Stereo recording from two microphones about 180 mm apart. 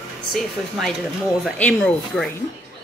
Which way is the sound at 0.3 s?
Centre (ahead or behind).